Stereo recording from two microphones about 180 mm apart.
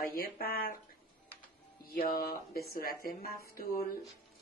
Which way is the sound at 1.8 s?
55° left (ahead or behind).